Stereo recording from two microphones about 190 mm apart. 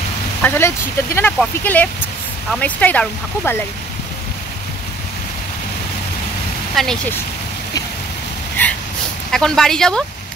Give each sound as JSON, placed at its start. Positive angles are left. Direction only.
{"t": 0.4, "sound": "speech", "side_deg": 10}
{"t": 6.7, "sound": "speech", "side_deg": 0}
{"t": 8.6, "sound": "a sound", "side_deg": 10}
{"t": 9.3, "sound": "speech", "side_deg": 0}